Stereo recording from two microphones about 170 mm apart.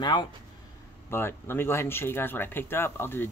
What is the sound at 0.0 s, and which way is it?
Speech, 25° left (ahead or behind).